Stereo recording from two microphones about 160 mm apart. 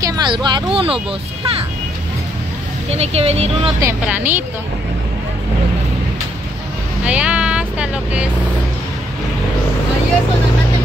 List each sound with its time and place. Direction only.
0.0 s speech: 25° right (ahead or behind)
2.9 s speech: 40° right (ahead or behind)
3.8 s speech: 10° right (ahead or behind)
7.1 s speech: 5° right (ahead or behind)